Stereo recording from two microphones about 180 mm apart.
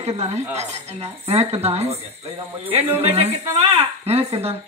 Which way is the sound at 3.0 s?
35° right (ahead or behind).